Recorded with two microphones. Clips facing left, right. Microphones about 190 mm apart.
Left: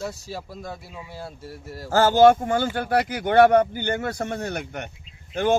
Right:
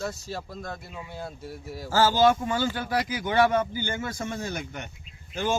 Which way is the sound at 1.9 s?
55° left (ahead or behind).